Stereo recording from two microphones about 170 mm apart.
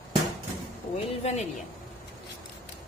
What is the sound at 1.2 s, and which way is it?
Speech, 40° left (ahead or behind).